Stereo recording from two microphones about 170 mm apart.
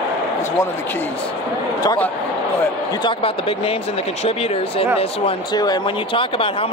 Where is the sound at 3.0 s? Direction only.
30° left (ahead or behind).